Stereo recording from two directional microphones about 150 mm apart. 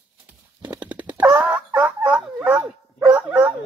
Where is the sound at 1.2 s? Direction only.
10° right (ahead or behind).